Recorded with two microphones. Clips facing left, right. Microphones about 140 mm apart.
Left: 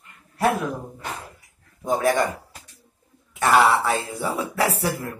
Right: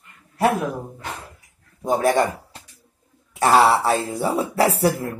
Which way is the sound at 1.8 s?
30° right (ahead or behind).